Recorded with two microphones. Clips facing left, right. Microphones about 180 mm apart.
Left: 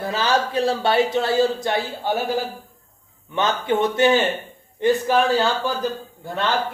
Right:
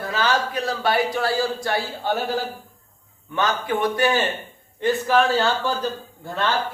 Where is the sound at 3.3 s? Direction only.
25° left (ahead or behind).